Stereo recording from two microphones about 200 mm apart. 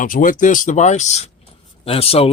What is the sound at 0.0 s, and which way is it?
Speech, 40° left (ahead or behind).